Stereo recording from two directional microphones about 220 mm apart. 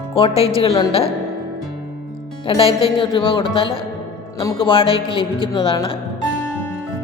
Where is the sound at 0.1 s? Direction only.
25° left (ahead or behind).